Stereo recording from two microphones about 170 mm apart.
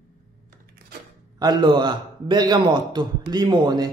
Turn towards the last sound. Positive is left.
turn(degrees=-25)  # may be behind; listen again after turning